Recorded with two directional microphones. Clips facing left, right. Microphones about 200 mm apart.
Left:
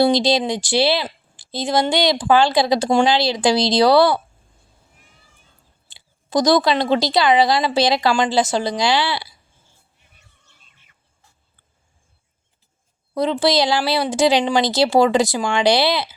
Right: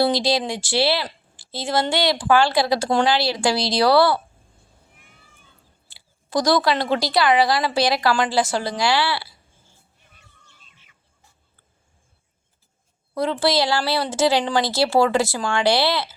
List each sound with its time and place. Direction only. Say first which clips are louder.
0.0 s speech: left 4 dB; 20° left (ahead or behind)
5.9 s speech: left 3 dB; 20° left (ahead or behind)
13.1 s speech: left 3 dB; 20° left (ahead or behind)